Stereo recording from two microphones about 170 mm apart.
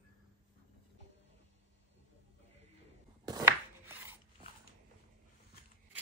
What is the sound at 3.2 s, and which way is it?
Chopping, 20° right (ahead or behind).